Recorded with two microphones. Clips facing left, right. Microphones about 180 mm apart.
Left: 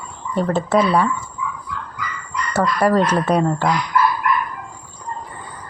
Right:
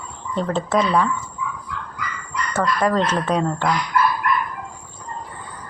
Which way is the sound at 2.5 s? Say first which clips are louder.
Left 3 dB; 10° left (ahead or behind).